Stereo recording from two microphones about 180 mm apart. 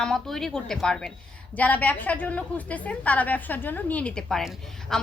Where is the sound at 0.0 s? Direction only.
Centre (ahead or behind).